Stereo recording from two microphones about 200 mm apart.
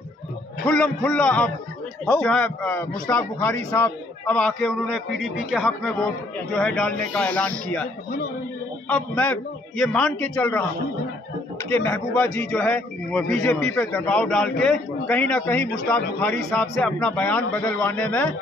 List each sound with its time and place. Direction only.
0.7 s a man's voice: 5° left (ahead or behind)
11.7 s a man's voice: 5° left (ahead or behind)